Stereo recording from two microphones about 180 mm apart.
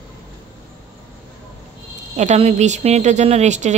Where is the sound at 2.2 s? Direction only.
40° right (ahead or behind).